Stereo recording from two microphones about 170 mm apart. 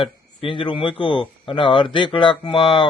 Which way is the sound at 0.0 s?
30° left (ahead or behind).